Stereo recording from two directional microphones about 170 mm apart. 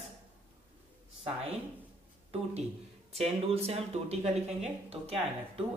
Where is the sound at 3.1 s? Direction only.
35° right (ahead or behind).